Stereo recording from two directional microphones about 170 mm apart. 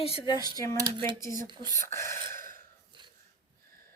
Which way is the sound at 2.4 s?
55° right (ahead or behind).